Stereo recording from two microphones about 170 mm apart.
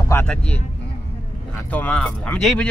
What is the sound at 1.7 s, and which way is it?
Speech, 10° left (ahead or behind).